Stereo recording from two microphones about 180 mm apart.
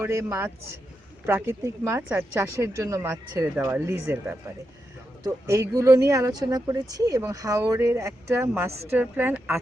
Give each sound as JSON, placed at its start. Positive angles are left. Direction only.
{"t": 0.0, "sound": "speech", "side_deg": -15}